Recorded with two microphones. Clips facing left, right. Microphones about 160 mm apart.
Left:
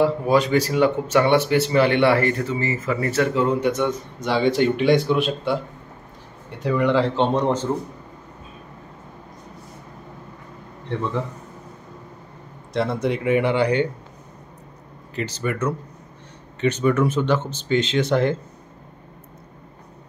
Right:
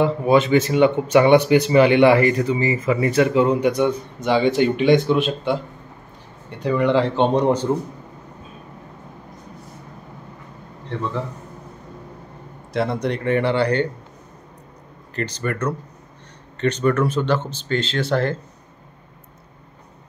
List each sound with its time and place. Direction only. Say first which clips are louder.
0.0 s speech: right 2 dB; centre (ahead or behind)
1.1 s speech: right 5 dB; 15° right (ahead or behind)
4.3 s speech: right 2 dB; centre (ahead or behind)
6.6 s speech: right 1 dB; centre (ahead or behind)
7.2 s speech: right 3 dB; 15° right (ahead or behind)
12.7 s speech: even; centre (ahead or behind)
15.1 s speech: even; 5° left (ahead or behind)